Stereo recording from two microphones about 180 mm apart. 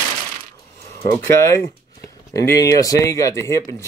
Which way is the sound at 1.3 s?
15° left (ahead or behind).